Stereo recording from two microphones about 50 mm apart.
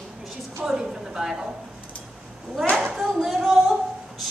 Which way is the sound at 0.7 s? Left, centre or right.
Centre.